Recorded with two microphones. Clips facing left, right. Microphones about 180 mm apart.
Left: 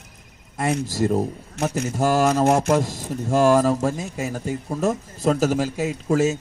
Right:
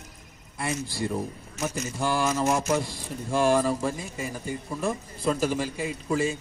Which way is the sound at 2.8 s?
45° left (ahead or behind).